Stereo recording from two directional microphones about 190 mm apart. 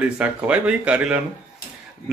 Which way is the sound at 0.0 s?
5° right (ahead or behind).